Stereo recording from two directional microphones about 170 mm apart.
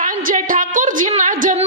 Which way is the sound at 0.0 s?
55° right (ahead or behind).